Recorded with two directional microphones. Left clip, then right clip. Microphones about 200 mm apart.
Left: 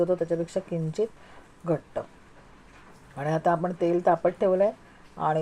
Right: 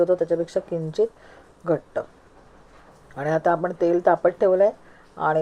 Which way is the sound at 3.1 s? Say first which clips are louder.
Right 4 dB; 10° right (ahead or behind).